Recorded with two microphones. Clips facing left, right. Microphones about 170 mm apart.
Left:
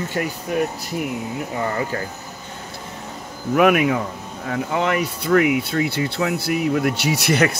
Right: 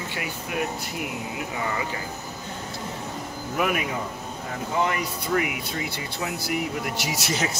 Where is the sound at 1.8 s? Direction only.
45° left (ahead or behind).